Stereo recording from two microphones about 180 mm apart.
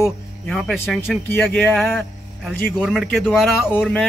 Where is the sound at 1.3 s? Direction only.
10° left (ahead or behind).